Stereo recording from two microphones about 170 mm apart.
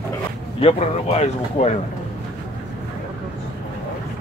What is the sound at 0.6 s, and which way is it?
A man's voice, 35° left (ahead or behind).